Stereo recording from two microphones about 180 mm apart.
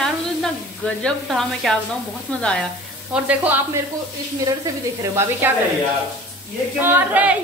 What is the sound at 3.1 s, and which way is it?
Speech, 10° right (ahead or behind).